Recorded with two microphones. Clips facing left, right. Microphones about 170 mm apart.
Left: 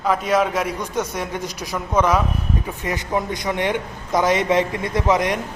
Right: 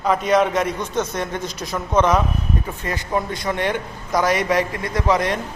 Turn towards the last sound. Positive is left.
turn(degrees=20)  # may be behind; listen again after turning